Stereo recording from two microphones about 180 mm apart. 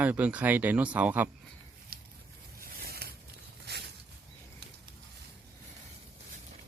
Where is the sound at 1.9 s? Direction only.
55° right (ahead or behind).